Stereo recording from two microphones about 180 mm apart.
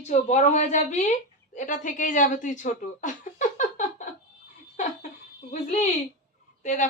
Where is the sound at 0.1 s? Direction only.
40° left (ahead or behind).